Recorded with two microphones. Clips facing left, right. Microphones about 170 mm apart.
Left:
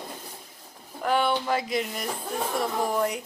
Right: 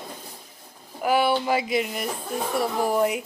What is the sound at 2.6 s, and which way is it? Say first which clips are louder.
Speech: right 4 dB; 5° right (ahead or behind).